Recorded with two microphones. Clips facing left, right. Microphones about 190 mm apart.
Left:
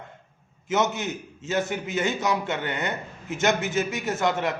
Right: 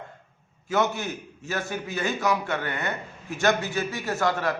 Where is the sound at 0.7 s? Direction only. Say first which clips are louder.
Even; 20° left (ahead or behind).